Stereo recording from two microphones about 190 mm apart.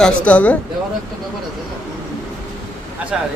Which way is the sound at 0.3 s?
5° left (ahead or behind).